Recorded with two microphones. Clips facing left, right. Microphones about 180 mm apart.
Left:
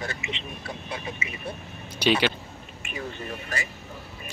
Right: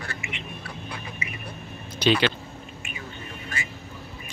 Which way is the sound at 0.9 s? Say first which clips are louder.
Left 4 dB; 25° left (ahead or behind).